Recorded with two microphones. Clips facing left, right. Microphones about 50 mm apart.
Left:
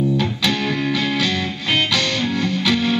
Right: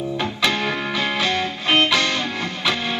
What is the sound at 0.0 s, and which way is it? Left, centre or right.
Music, right.